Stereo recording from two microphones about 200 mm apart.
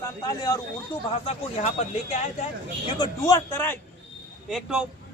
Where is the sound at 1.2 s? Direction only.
30° left (ahead or behind).